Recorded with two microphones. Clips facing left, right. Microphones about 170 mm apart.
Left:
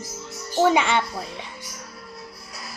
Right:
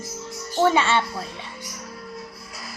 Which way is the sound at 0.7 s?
15° left (ahead or behind).